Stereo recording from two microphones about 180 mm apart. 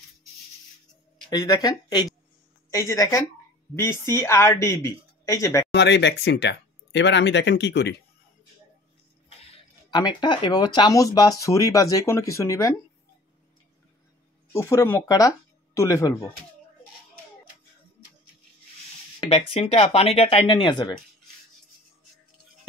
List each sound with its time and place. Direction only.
1.3 s speech: 20° left (ahead or behind)
5.7 s speech: 75° left (ahead or behind)
9.4 s a sound: 35° left (ahead or behind)
9.9 s speech: 25° left (ahead or behind)
14.5 s speech: 15° left (ahead or behind)
19.2 s speech: 35° left (ahead or behind)